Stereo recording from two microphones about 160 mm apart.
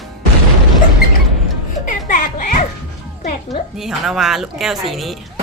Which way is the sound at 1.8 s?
55° left (ahead or behind).